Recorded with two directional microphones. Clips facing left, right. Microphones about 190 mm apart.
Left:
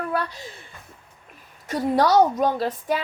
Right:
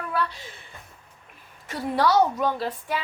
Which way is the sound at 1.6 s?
40° left (ahead or behind).